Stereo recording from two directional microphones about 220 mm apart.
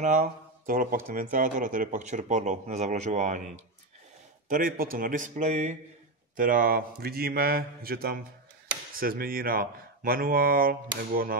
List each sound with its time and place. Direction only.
0.0 s speech: 35° right (ahead or behind)
4.5 s speech: 40° right (ahead or behind)